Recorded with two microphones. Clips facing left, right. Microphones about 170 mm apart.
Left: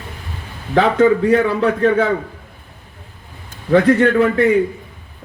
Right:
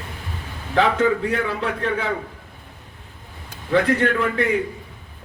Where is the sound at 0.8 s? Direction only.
45° left (ahead or behind).